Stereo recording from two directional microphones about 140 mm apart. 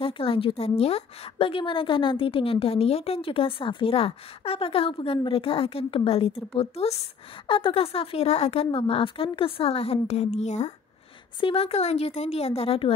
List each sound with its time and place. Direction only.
0.0 s a woman's voice: 40° left (ahead or behind)
11.4 s a woman's voice: 45° left (ahead or behind)